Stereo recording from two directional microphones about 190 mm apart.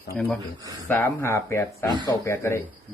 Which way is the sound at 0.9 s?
10° left (ahead or behind).